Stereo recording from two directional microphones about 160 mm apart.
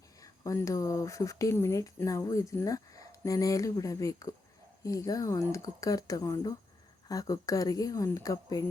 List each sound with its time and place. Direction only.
0.2 s speech: 20° left (ahead or behind)